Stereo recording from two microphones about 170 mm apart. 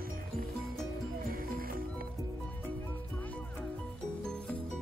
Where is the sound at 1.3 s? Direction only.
60° right (ahead or behind).